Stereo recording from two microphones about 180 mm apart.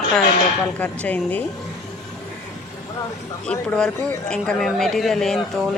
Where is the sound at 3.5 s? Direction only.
5° left (ahead or behind).